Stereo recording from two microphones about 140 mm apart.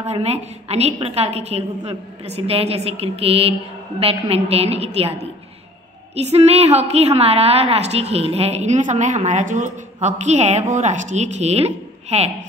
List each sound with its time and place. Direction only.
0.0 s a woman's voice: 50° right (ahead or behind)
6.1 s a woman's voice: 50° right (ahead or behind)